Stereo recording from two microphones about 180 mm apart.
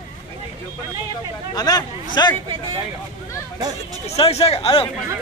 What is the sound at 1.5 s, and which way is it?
Speech, 20° left (ahead or behind).